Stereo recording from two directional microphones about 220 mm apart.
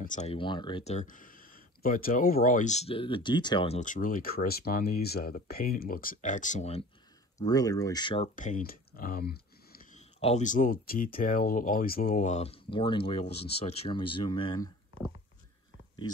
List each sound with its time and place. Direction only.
0.0 s speech: 35° left (ahead or behind)
7.3 s speech: 15° left (ahead or behind)
8.4 s speech: 35° left (ahead or behind); by 14.7 s 20° left (ahead or behind)